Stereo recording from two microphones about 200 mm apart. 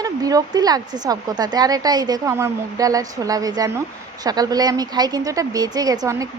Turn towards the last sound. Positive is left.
turn(degrees=-15)  # may be behind; listen again after turning